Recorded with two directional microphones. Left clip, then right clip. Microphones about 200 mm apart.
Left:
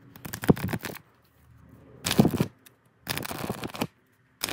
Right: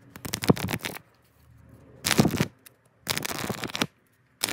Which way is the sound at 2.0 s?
5° right (ahead or behind).